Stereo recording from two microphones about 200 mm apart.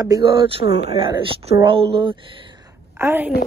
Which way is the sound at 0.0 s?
20° right (ahead or behind).